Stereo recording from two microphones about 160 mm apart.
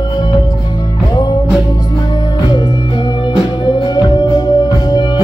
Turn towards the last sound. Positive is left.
turn(degrees=25)  # may be behind; listen again after turning